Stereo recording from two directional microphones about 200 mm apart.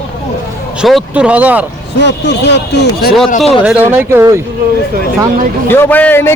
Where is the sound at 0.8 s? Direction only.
Centre (ahead or behind).